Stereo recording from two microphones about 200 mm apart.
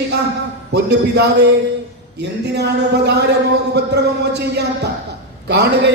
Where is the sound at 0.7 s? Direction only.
55° right (ahead or behind).